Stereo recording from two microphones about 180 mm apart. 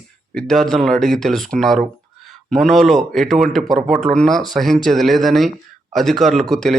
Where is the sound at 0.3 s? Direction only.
Centre (ahead or behind).